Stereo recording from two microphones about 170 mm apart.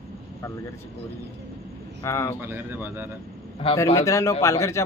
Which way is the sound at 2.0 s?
15° left (ahead or behind).